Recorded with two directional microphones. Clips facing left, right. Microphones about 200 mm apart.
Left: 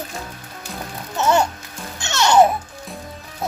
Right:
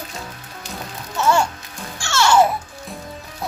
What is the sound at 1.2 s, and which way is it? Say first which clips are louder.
Music: left 1 dB; 20° left (ahead or behind).